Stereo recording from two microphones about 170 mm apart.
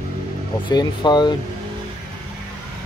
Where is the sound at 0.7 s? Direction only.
25° left (ahead or behind).